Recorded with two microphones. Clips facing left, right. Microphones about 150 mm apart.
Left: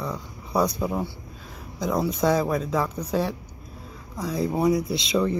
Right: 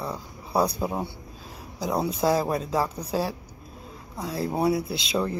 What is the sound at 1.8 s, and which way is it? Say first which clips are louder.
Speech: left 1 dB; 10° right (ahead or behind).